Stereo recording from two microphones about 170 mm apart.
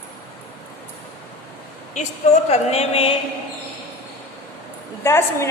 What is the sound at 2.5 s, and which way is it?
Speech, 35° left (ahead or behind).